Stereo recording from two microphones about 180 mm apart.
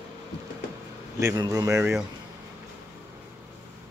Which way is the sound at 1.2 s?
20° right (ahead or behind).